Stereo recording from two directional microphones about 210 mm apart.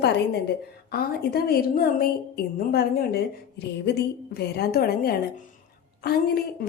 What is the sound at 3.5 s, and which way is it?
A woman's voice, 55° left (ahead or behind).